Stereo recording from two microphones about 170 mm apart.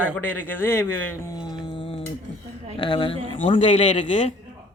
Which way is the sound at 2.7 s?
30° left (ahead or behind).